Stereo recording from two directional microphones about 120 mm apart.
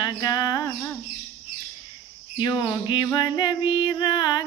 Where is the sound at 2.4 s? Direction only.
35° left (ahead or behind).